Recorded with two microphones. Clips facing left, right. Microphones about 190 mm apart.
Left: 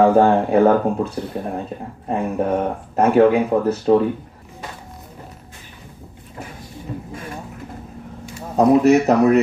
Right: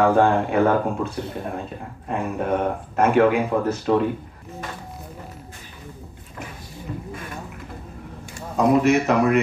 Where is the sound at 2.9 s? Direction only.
30° left (ahead or behind).